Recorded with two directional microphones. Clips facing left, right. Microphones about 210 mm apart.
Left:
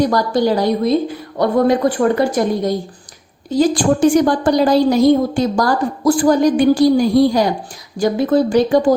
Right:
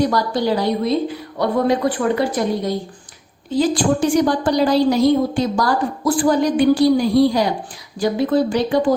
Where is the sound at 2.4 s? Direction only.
50° left (ahead or behind).